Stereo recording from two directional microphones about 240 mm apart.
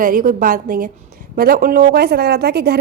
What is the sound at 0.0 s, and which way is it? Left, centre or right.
A woman's voice, right.